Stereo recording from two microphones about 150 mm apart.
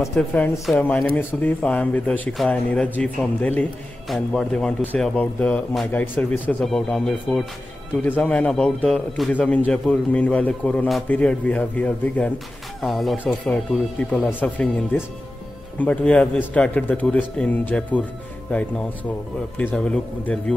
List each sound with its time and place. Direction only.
0.3 s a man's voice: 10° left (ahead or behind)